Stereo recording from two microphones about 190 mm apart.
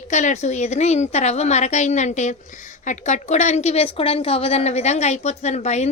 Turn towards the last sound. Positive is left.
turn(degrees=35)  # may be behind; listen again after turning